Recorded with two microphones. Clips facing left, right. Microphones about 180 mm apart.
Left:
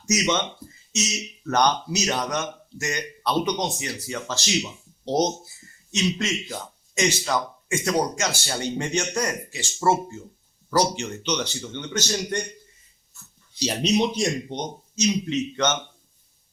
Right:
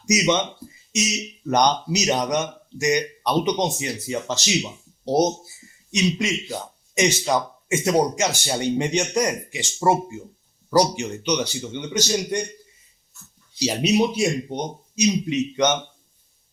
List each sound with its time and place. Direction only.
0.0 s speech: 10° right (ahead or behind)
13.6 s speech: 10° right (ahead or behind)